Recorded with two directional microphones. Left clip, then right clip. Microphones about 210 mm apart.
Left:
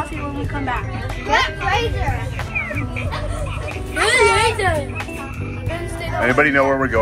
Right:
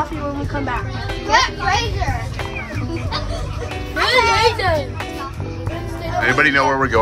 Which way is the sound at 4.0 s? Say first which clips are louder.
Even; 40° right (ahead or behind).